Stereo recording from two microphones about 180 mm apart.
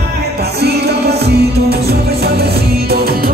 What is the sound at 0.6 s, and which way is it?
Music, 65° right (ahead or behind).